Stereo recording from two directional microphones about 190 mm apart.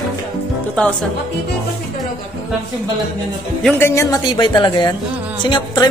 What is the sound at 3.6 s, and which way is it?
Speech, 10° left (ahead or behind).